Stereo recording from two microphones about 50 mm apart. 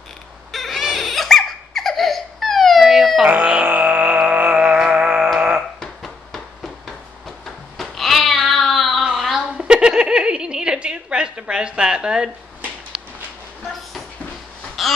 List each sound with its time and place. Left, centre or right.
0.5 s laughter: centre
3.4 s music: right
6.0 s a sound: centre
7.2 s cat: centre
9.0 s a sound: centre
14.8 s quack: centre